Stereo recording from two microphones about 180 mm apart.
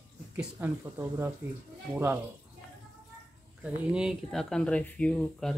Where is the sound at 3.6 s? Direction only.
5° right (ahead or behind).